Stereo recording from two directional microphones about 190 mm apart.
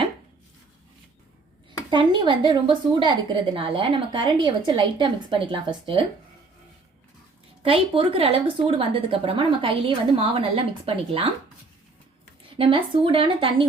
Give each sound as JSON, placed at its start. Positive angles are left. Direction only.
{"t": 1.9, "sound": "a woman's voice", "side_deg": -25}
{"t": 7.6, "sound": "a woman's voice", "side_deg": -30}
{"t": 12.5, "sound": "a woman's voice", "side_deg": -25}